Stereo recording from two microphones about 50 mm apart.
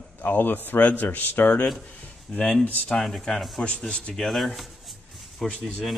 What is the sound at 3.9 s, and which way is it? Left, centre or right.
Speech, centre.